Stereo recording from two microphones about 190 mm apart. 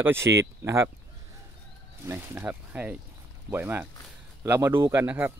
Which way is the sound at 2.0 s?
10° right (ahead or behind).